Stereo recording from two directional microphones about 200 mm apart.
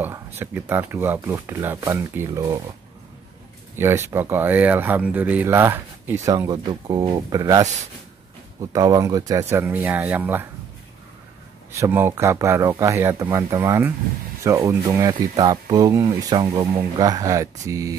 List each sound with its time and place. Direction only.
0.4 s speech: 10° right (ahead or behind)
3.7 s speech: 10° right (ahead or behind)
11.7 s speech: 10° right (ahead or behind)